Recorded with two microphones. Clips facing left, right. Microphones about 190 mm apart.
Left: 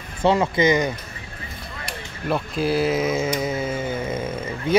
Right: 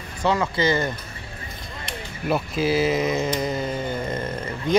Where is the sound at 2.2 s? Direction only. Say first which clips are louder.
Even; 5° right (ahead or behind).